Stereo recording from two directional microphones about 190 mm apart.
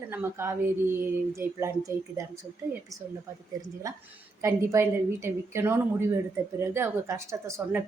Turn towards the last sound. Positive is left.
turn(degrees=-10)  # may be behind; listen again after turning